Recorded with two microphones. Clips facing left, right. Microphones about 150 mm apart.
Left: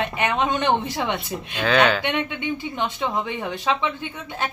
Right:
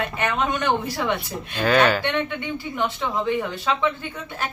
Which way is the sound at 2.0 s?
15° left (ahead or behind).